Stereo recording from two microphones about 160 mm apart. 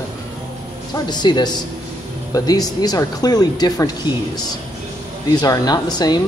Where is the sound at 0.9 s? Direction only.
25° left (ahead or behind).